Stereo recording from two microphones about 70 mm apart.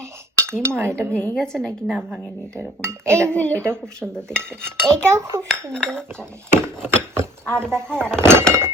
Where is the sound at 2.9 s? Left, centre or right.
Right.